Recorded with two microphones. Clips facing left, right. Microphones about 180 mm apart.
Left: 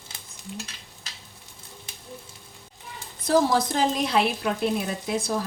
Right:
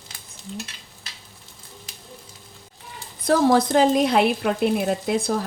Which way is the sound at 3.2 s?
60° right (ahead or behind).